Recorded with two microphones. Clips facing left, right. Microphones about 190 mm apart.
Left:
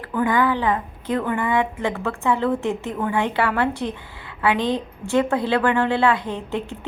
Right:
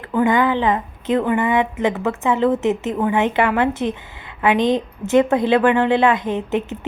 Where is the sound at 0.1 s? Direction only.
20° right (ahead or behind).